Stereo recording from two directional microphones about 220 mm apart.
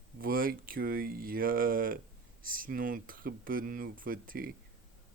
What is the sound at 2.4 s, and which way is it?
Speech, 40° right (ahead or behind).